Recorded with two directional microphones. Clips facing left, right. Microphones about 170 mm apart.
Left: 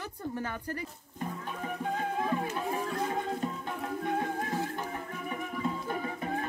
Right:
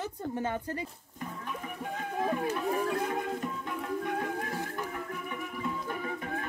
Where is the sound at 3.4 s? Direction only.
30° left (ahead or behind).